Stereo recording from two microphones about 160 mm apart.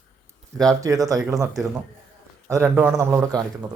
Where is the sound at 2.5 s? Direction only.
15° right (ahead or behind).